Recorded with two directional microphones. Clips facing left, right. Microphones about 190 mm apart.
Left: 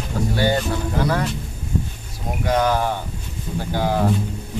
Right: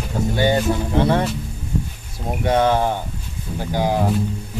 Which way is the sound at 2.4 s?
25° right (ahead or behind).